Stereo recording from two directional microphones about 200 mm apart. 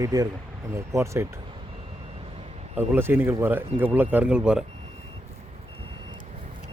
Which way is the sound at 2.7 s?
10° right (ahead or behind).